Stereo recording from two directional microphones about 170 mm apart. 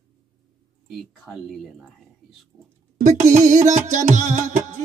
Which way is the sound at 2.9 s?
45° right (ahead or behind).